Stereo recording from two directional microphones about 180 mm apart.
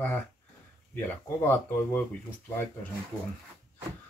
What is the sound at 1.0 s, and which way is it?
Speech, 10° left (ahead or behind).